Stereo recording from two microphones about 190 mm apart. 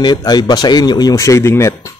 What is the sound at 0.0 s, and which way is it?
A man's voice, 20° left (ahead or behind).